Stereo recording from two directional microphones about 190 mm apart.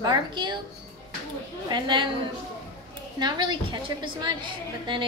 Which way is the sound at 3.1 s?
20° right (ahead or behind).